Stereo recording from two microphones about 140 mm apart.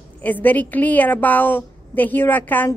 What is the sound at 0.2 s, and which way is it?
A woman's voice, 10° left (ahead or behind).